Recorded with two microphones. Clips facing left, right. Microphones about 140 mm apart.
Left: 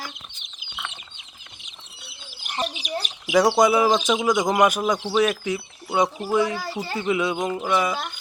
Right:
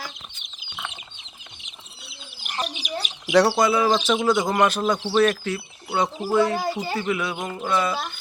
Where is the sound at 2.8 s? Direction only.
5° right (ahead or behind).